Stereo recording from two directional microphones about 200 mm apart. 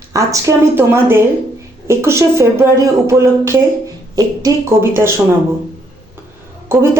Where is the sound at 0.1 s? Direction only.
15° right (ahead or behind).